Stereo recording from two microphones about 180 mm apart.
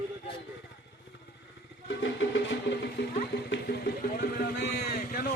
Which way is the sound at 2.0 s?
85° left.